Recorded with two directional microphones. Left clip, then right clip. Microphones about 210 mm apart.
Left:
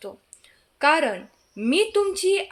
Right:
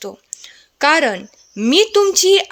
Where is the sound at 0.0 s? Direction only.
45° right (ahead or behind).